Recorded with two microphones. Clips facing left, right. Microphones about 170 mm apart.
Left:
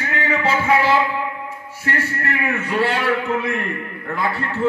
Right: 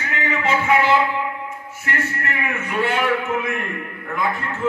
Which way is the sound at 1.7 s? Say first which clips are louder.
Left 3 dB; 35° left (ahead or behind).